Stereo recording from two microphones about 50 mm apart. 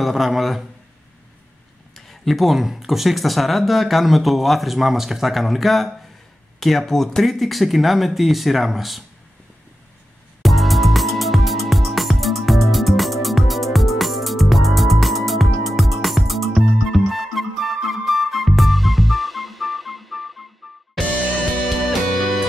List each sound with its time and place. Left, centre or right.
0.0 s speech: centre
2.0 s speech: centre
10.4 s music: centre